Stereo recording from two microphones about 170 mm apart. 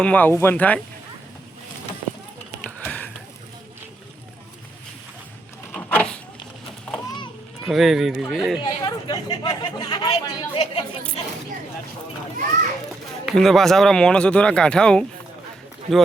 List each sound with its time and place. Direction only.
0.0 s speech: 10° left (ahead or behind)
2.6 s a sound: 10° left (ahead or behind)
5.7 s a sound: 10° left (ahead or behind)
7.7 s speech: centre (ahead or behind)
8.6 s speech: 25° left (ahead or behind)
13.2 s speech: centre (ahead or behind)